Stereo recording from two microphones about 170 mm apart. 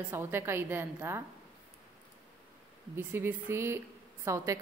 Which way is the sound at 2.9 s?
15° right (ahead or behind).